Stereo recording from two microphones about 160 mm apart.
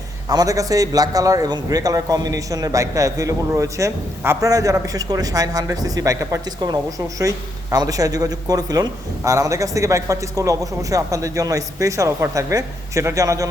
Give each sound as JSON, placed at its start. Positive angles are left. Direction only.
{"t": 0.3, "sound": "a man's voice", "side_deg": -20}